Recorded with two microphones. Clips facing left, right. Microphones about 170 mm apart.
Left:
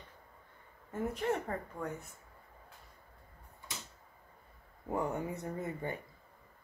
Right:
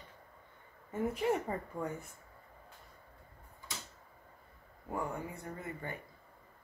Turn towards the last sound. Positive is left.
turn(degrees=20)  # may be behind; listen again after turning